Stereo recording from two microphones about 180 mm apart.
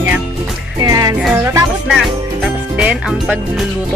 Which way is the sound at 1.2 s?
10° right (ahead or behind).